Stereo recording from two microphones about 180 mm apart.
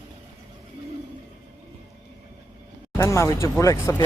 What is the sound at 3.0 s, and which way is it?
Speech, 15° left (ahead or behind).